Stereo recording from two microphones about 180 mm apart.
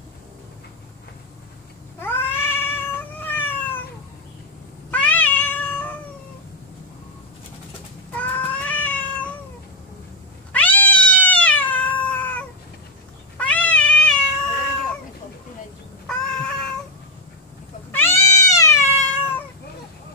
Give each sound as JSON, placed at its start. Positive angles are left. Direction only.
{"t": 2.0, "sound": "cat", "side_deg": 10}
{"t": 4.9, "sound": "cat", "side_deg": 10}
{"t": 8.1, "sound": "cat", "side_deg": 10}
{"t": 10.5, "sound": "cat", "side_deg": 10}
{"t": 16.1, "sound": "a sound", "side_deg": 5}
{"t": 17.9, "sound": "cat", "side_deg": 15}